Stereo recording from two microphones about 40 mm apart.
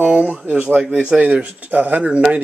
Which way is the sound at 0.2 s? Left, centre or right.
Right.